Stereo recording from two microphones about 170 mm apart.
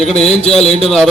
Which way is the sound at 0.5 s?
5° left (ahead or behind).